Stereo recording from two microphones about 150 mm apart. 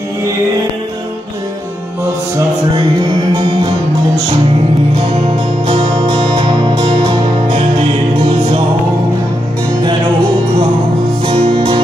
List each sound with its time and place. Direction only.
5.7 s music: 35° right (ahead or behind)
11.2 s music: 40° right (ahead or behind)